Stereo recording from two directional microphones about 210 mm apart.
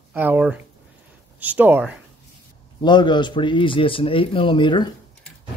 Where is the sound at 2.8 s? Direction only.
20° left (ahead or behind).